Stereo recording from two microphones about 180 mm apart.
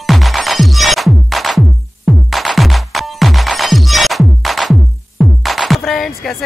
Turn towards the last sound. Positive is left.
turn(degrees=0)  # may be behind; listen again after turning